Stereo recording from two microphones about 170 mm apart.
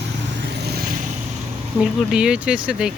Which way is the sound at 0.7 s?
60° right (ahead or behind).